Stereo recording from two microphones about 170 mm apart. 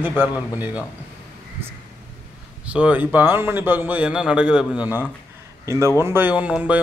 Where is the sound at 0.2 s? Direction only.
10° right (ahead or behind).